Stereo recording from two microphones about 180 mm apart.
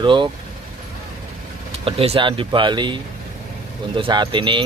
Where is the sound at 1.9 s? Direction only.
30° right (ahead or behind).